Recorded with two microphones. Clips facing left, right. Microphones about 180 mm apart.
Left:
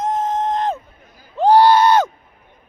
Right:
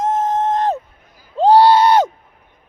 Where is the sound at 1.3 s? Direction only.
25° right (ahead or behind).